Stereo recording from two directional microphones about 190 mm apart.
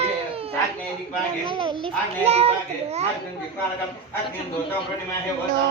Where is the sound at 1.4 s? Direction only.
25° right (ahead or behind).